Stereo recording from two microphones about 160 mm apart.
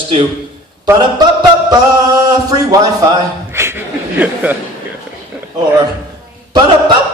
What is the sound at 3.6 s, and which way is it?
Chuckle, 15° right (ahead or behind).